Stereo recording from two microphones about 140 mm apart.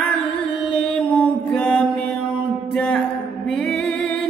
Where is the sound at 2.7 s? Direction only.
10° left (ahead or behind).